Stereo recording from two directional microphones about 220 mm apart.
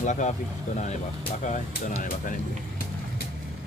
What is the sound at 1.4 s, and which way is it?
Speech, 35° left (ahead or behind).